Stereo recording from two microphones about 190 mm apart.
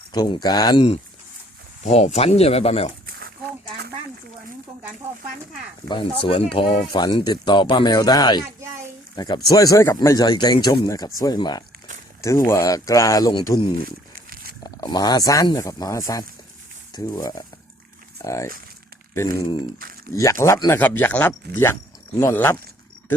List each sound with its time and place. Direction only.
0.1 s speech: 20° left (ahead or behind)
1.8 s speech: 35° left (ahead or behind)
3.1 s a sound: 55° right (ahead or behind)
5.9 s speech: 25° left (ahead or behind)
14.2 s pig: 50° right (ahead or behind)
14.6 s speech: 20° left (ahead or behind)